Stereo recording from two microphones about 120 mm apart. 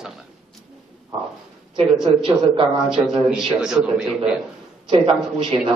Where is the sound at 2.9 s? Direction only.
5° right (ahead or behind).